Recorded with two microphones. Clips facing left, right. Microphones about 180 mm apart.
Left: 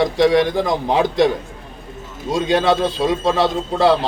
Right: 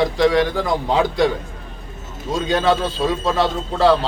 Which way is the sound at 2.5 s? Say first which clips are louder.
Left 2 dB; 15° left (ahead or behind).